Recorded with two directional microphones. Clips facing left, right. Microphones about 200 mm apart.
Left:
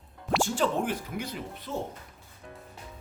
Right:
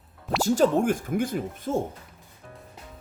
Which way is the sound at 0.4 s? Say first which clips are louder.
Right 10 dB; 40° right (ahead or behind).